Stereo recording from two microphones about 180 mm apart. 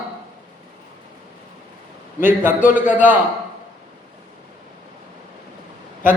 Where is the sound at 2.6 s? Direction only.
45° left (ahead or behind).